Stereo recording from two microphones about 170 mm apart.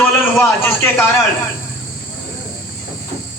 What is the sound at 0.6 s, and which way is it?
Speech, 10° left (ahead or behind).